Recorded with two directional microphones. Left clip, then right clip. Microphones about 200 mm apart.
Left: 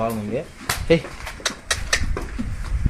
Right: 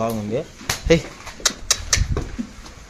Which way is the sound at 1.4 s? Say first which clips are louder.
Right 3 dB; 20° right (ahead or behind).